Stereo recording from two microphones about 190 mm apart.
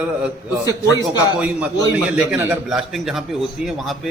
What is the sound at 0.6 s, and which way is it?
Speech, 20° left (ahead or behind).